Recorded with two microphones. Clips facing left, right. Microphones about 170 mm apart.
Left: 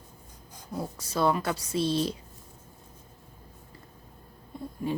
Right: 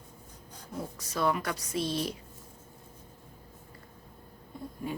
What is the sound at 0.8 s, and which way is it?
Speech, 30° left (ahead or behind).